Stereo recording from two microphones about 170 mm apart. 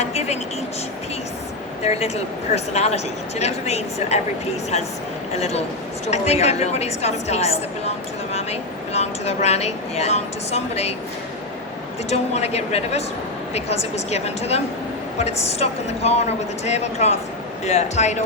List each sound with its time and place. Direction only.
0.0 s a sound: 40° left (ahead or behind)
1.8 s a woman's voice: 35° left (ahead or behind)
5.4 s a woman's voice: 40° left (ahead or behind)
12.0 s a woman's voice: 40° left (ahead or behind)